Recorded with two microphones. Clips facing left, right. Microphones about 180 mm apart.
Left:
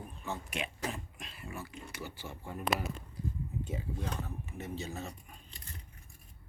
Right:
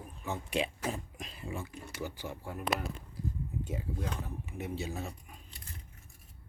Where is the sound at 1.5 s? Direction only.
20° right (ahead or behind); by 5.6 s 5° right (ahead or behind).